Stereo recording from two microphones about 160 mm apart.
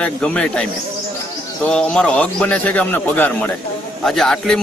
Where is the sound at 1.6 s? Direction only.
5° left (ahead or behind).